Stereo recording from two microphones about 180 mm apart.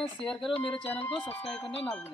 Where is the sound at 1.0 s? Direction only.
10° left (ahead or behind).